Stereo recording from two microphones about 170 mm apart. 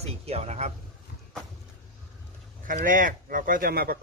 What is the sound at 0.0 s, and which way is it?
Speech, 40° right (ahead or behind).